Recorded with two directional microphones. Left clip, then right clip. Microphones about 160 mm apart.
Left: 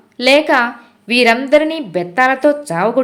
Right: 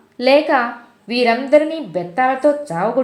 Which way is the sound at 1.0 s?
10° left (ahead or behind).